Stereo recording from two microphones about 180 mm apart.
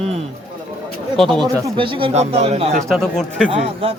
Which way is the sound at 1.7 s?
30° right (ahead or behind).